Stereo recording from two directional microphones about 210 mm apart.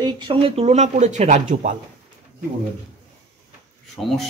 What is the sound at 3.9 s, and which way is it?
Speech, centre (ahead or behind).